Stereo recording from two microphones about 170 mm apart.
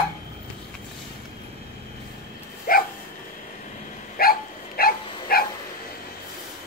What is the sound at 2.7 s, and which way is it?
Dog, 60° left (ahead or behind).